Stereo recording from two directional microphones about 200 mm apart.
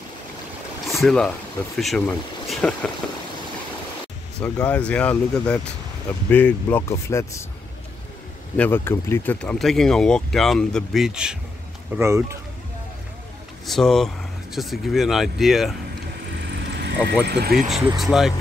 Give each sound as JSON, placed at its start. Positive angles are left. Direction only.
{"t": 0.8, "sound": "a sound", "side_deg": 0}
{"t": 1.8, "sound": "speech", "side_deg": 0}
{"t": 4.4, "sound": "speech", "side_deg": 5}
{"t": 8.5, "sound": "speech", "side_deg": 10}
{"t": 13.7, "sound": "speech", "side_deg": 0}
{"t": 16.5, "sound": "vehicle", "side_deg": -60}
{"t": 17.3, "sound": "speech", "side_deg": -50}
{"t": 17.9, "sound": "speech", "side_deg": 0}